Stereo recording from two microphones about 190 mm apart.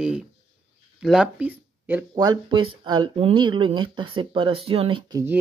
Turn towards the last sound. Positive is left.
turn(degrees=-25)  # may be behind; listen again after turning